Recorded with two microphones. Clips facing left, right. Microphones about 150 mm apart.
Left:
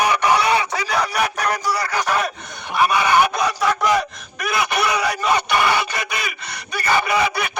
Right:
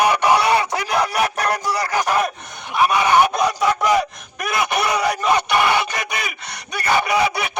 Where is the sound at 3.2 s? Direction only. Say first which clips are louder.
Right 2 dB; 20° right (ahead or behind).